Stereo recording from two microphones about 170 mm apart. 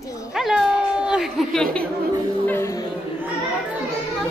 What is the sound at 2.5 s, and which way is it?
Music, 15° left (ahead or behind).